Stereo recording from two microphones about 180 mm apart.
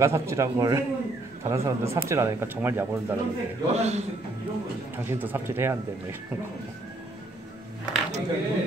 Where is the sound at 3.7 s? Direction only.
40° right (ahead or behind).